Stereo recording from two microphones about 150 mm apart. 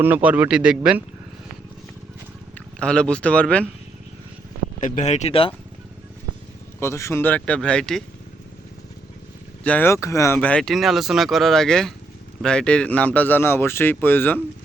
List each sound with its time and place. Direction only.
0.0 s speech: 10° right (ahead or behind)
2.7 s speech: 5° left (ahead or behind)
4.8 s speech: 55° left (ahead or behind); by 5.5 s 40° left (ahead or behind)
6.7 s speech: 20° left (ahead or behind)
9.6 s speech: 15° left (ahead or behind)